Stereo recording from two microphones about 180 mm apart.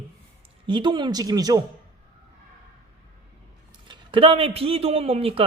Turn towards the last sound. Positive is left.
turn(degrees=-30)  # may be behind; listen again after turning